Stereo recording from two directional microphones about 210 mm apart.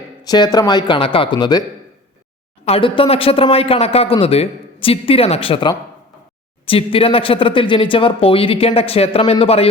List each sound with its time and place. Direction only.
0.3 s speech: 20° left (ahead or behind)
2.6 s speech: 25° left (ahead or behind)